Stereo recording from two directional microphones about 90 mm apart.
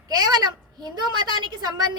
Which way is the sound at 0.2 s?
50° right (ahead or behind).